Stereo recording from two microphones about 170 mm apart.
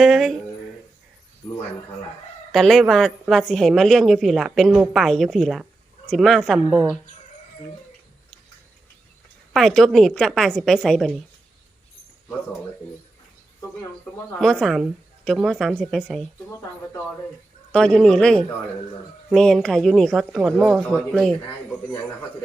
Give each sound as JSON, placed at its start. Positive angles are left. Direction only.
{"t": 0.0, "sound": "a woman's voice", "side_deg": 0}
{"t": 2.5, "sound": "a woman's voice", "side_deg": 0}
{"t": 9.5, "sound": "a woman's voice", "side_deg": 0}
{"t": 14.4, "sound": "a woman's voice", "side_deg": 0}
{"t": 17.7, "sound": "a woman's voice", "side_deg": 5}